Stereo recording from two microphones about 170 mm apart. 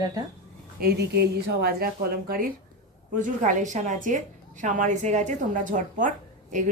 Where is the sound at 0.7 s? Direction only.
70° right (ahead or behind).